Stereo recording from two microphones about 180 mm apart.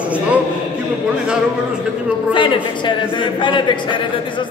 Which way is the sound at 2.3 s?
25° left (ahead or behind).